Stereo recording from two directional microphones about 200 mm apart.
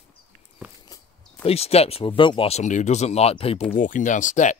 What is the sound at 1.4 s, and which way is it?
Speech, 30° left (ahead or behind).